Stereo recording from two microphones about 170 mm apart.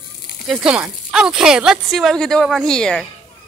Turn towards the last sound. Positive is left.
turn(degrees=5)  # may be behind; listen again after turning